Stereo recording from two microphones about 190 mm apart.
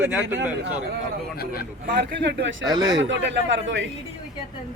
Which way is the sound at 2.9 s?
75° right (ahead or behind).